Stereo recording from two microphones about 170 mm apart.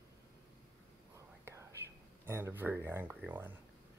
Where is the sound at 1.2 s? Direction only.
15° right (ahead or behind).